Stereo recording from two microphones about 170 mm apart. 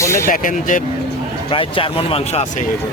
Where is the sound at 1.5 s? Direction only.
30° left (ahead or behind).